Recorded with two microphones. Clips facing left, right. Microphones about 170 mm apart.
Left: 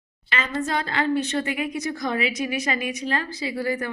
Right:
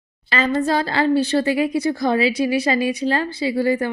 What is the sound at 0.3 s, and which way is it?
A woman's voice, 35° right (ahead or behind).